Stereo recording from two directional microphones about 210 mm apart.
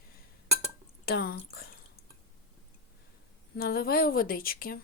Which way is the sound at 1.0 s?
50° left (ahead or behind).